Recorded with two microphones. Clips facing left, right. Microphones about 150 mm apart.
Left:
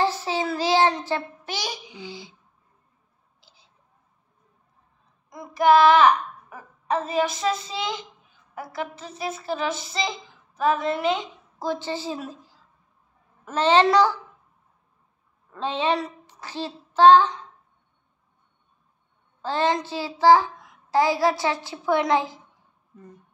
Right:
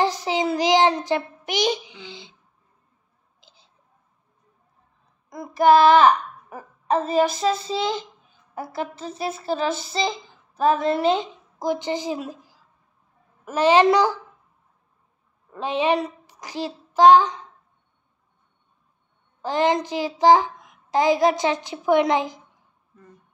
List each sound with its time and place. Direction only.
0.0 s child singing: 15° right (ahead or behind)
3.3 s whispering: 20° right (ahead or behind)
5.3 s a child's voice: 35° right (ahead or behind)
11.5 s a woman's voice: 15° right (ahead or behind)
15.5 s a child's voice: 15° right (ahead or behind)
19.4 s a child's voice: 15° right (ahead or behind)